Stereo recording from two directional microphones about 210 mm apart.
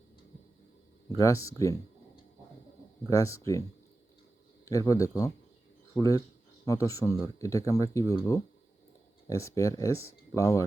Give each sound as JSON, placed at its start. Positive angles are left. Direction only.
{"t": 1.1, "sound": "speech", "side_deg": 15}
{"t": 3.1, "sound": "speech", "side_deg": 15}
{"t": 4.6, "sound": "speech", "side_deg": 15}